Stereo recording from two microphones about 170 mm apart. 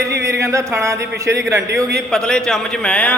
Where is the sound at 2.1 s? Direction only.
5° left (ahead or behind).